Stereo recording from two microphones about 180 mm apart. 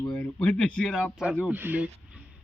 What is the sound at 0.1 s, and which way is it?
Speech, 5° left (ahead or behind).